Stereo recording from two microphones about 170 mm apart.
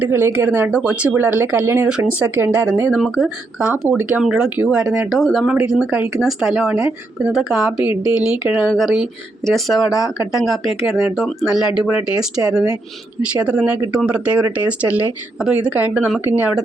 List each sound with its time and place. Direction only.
0.0 s speech: 15° right (ahead or behind)
9.9 s speech: 20° left (ahead or behind)
10.3 s speech: centre (ahead or behind)